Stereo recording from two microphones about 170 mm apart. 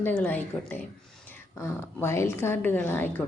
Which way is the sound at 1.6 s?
15° left (ahead or behind).